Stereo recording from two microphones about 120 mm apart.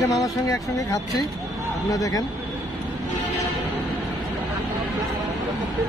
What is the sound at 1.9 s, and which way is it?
Speech, 30° left (ahead or behind).